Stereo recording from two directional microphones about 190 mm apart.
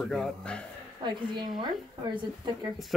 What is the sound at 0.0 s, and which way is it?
Speech, centre (ahead or behind).